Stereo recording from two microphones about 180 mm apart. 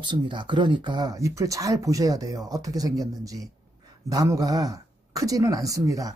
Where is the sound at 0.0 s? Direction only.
25° right (ahead or behind).